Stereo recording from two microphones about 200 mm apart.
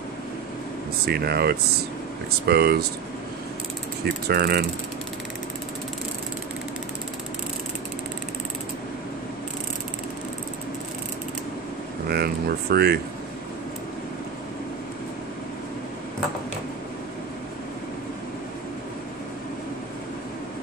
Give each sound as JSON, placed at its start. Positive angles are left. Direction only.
{"t": 1.0, "sound": "speech", "side_deg": -50}
{"t": 4.0, "sound": "speech", "side_deg": -55}
{"t": 12.1, "sound": "speech", "side_deg": -55}